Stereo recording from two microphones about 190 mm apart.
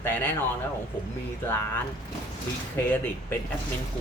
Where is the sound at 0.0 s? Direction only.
10° left (ahead or behind).